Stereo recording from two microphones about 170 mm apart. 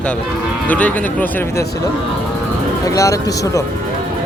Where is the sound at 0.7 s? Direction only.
10° left (ahead or behind).